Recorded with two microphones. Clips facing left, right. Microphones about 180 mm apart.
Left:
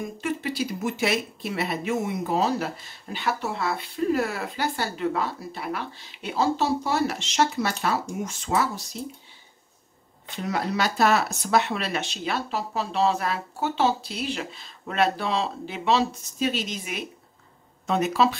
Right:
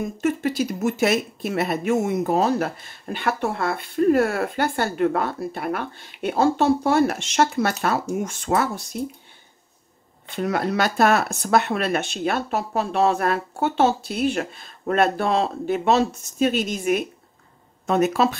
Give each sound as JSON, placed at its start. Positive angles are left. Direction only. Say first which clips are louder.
{"t": 0.0, "sound": "speech", "louder": "right 6 dB", "side_deg": -45}
{"t": 10.3, "sound": "speech", "louder": "right 5 dB", "side_deg": -55}